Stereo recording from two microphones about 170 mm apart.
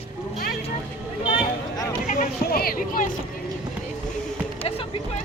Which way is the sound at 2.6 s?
60° left (ahead or behind).